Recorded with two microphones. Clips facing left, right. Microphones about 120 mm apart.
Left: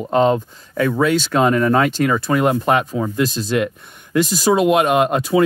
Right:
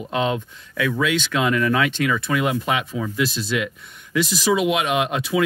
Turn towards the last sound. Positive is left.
turn(degrees=45)  # may be behind; listen again after turning